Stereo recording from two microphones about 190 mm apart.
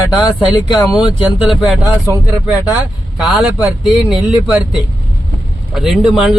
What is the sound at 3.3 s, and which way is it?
A man's voice, 5° right (ahead or behind).